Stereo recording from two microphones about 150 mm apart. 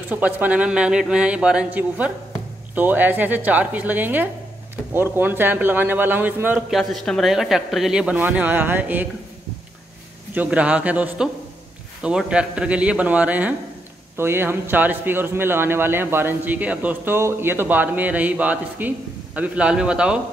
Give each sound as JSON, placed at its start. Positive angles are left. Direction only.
{"t": 0.1, "sound": "speech", "side_deg": -10}
{"t": 6.7, "sound": "speech", "side_deg": 0}
{"t": 10.3, "sound": "speech", "side_deg": -10}